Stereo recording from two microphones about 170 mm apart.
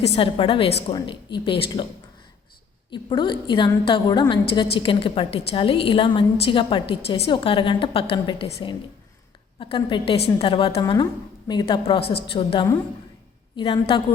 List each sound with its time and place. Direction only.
0.0 s a woman's voice: 35° left (ahead or behind)
2.9 s a woman's voice: 25° left (ahead or behind)
9.6 s a woman's voice: 30° left (ahead or behind)